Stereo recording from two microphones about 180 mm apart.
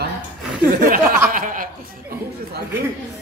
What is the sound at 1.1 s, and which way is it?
Chuckle, 50° right (ahead or behind).